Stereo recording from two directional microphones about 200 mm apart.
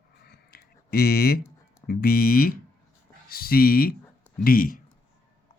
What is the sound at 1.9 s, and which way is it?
Speech, 50° left (ahead or behind).